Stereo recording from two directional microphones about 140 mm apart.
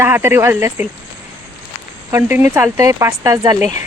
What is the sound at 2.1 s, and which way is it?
Speech, 15° right (ahead or behind).